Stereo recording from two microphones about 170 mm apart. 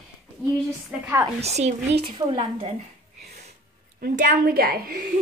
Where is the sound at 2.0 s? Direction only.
30° right (ahead or behind).